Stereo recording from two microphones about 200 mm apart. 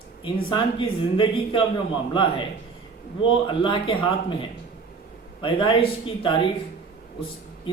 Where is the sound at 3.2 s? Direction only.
25° left (ahead or behind).